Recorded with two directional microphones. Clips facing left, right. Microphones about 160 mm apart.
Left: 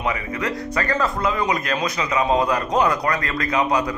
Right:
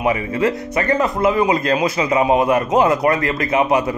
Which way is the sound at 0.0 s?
25° right (ahead or behind).